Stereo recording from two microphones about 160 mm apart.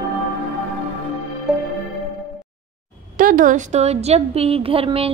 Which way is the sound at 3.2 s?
60° right (ahead or behind).